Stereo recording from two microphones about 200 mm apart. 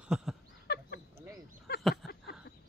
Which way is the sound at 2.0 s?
Centre (ahead or behind).